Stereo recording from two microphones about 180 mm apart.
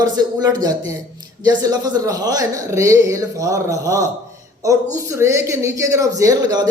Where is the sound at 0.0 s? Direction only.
20° right (ahead or behind).